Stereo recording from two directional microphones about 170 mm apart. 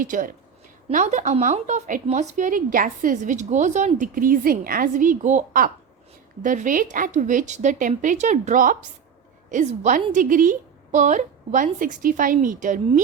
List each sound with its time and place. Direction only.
0.0 s speech: 55° right (ahead or behind)